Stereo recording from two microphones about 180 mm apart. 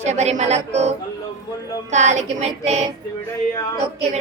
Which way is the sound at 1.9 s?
40° right (ahead or behind).